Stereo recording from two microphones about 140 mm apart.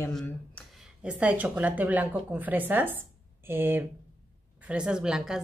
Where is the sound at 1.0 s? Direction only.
10° right (ahead or behind).